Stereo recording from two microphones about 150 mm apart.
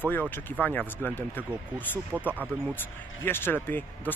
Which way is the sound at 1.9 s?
10° right (ahead or behind).